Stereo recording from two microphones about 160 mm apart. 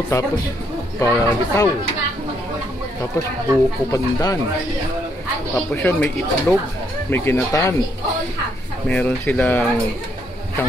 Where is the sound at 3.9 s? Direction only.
20° left (ahead or behind).